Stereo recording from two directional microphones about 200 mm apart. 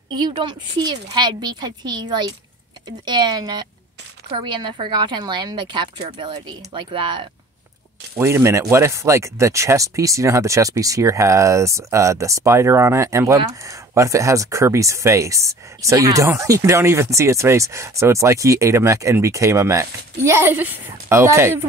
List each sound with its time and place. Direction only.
0.1 s a woman's voice: 20° right (ahead or behind)
8.2 s speech: 15° right (ahead or behind)